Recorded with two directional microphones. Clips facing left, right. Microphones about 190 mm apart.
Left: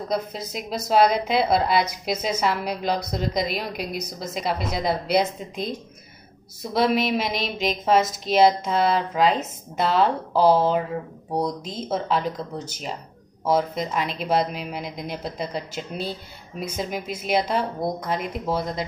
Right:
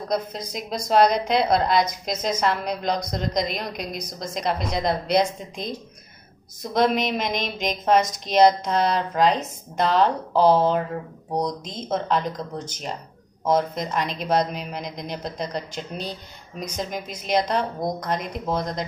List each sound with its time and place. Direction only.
0.1 s a woman's voice: 5° left (ahead or behind)